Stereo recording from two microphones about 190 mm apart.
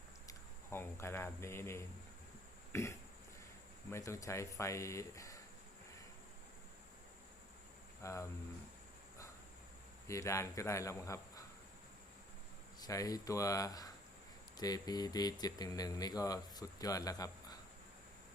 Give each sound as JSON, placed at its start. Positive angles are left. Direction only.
{"t": 0.3, "sound": "speech", "side_deg": 15}
{"t": 8.0, "sound": "speech", "side_deg": 15}
{"t": 10.1, "sound": "speech", "side_deg": 15}
{"t": 12.8, "sound": "speech", "side_deg": 20}